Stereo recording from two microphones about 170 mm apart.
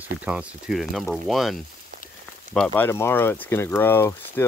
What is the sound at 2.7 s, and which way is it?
Speech, 15° left (ahead or behind).